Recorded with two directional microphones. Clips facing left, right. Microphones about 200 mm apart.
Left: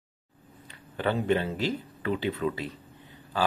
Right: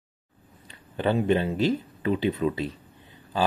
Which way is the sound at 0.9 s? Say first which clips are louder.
Right 3 dB; 20° right (ahead or behind).